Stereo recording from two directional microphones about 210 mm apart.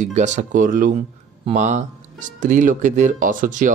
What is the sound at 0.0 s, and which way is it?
Speech, 35° right (ahead or behind).